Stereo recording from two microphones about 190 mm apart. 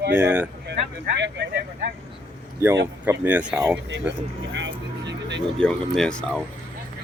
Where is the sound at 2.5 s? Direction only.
15° right (ahead or behind).